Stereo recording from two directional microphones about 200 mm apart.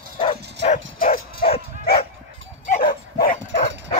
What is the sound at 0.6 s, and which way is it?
Bow-wow, 40° left (ahead or behind).